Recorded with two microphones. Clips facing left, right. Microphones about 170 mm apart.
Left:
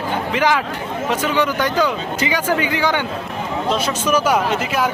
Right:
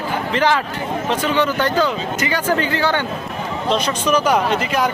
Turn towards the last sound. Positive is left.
turn(degrees=5)  # may be behind; listen again after turning